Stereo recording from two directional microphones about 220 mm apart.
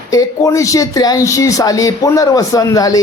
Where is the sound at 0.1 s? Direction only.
15° left (ahead or behind).